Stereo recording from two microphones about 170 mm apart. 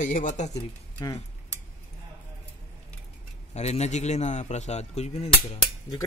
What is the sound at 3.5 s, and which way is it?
Speech, 40° left (ahead or behind).